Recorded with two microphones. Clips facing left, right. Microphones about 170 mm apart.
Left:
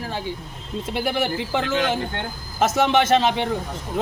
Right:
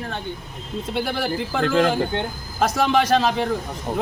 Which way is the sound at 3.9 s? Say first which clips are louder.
Right 1 dB; 50° right (ahead or behind).